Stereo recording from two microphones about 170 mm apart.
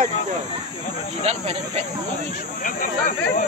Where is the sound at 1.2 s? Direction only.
35° right (ahead or behind).